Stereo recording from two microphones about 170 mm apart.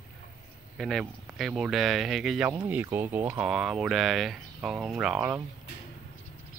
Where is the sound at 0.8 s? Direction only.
Centre (ahead or behind).